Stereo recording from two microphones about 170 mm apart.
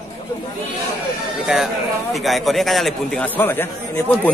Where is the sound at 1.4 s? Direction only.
Centre (ahead or behind).